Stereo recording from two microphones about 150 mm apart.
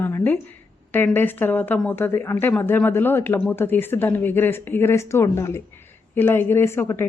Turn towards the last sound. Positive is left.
turn(degrees=15)  # may be behind; listen again after turning